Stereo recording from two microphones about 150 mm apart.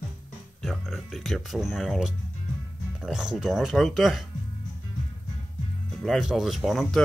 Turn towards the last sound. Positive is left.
turn(degrees=0)  # may be behind; listen again after turning